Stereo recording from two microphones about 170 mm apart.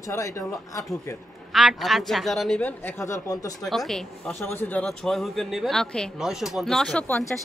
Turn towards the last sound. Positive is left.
turn(degrees=5)  # may be behind; listen again after turning